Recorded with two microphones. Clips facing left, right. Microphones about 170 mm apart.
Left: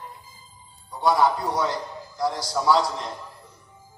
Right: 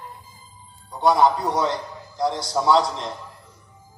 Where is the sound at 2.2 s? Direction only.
25° right (ahead or behind).